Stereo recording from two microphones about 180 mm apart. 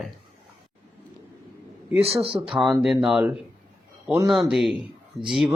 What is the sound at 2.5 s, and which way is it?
Speech, centre (ahead or behind).